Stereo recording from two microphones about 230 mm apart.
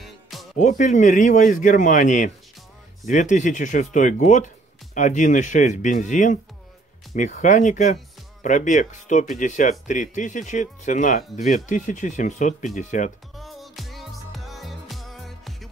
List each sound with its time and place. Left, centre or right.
0.0 s music: centre
0.6 s speech: left
13.4 s music: centre